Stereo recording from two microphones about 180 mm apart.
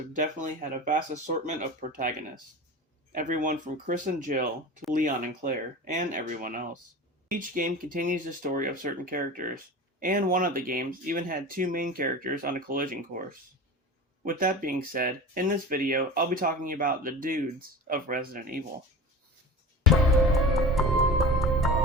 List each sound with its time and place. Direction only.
0.1 s speech: 45° right (ahead or behind)
3.2 s speech: 45° right (ahead or behind)
14.3 s speech: 50° right (ahead or behind)
19.8 s music: centre (ahead or behind)